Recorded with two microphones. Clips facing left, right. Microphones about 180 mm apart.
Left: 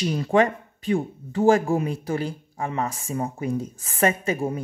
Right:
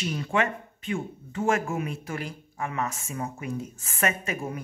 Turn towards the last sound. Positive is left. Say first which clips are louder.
# left 7 dB
turn(degrees=30)  # may be behind; listen again after turning